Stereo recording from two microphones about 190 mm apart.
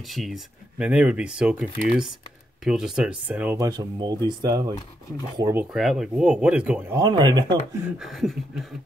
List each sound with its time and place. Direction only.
0.1 s speech: centre (ahead or behind)
3.5 s speech: 20° right (ahead or behind)
7.0 s speech: 20° right (ahead or behind)
8.0 s speech: centre (ahead or behind)